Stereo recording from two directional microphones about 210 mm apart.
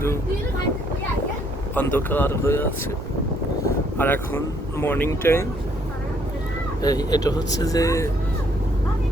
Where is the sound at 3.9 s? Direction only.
10° left (ahead or behind).